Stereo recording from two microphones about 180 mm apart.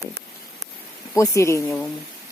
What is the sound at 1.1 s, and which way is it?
Speech, 15° left (ahead or behind).